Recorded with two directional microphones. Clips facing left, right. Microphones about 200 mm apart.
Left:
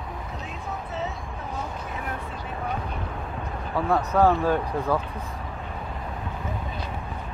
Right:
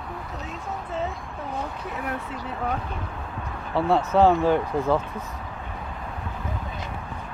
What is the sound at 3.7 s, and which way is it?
Speech, 25° right (ahead or behind).